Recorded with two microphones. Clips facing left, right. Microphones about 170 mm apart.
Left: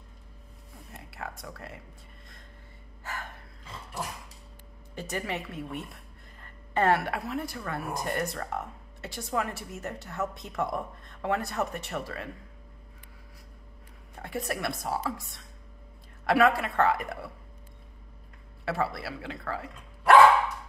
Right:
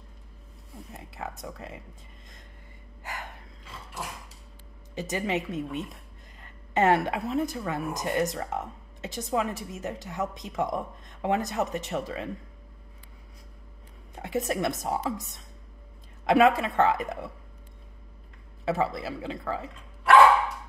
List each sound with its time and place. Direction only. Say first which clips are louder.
1.1 s speech: right 3 dB; 20° right (ahead or behind)
3.0 s gasp: even; 15° right (ahead or behind)
4.9 s a woman's voice: right 5 dB; 20° right (ahead or behind)
14.1 s a woman's voice: right 5 dB; 20° right (ahead or behind)
18.7 s a woman's voice: right 3 dB; 20° right (ahead or behind)